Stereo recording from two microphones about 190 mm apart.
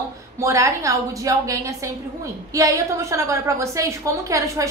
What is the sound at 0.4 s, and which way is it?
A woman's voice, 15° right (ahead or behind).